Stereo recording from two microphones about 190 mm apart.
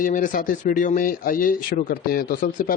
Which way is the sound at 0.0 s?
45° left (ahead or behind).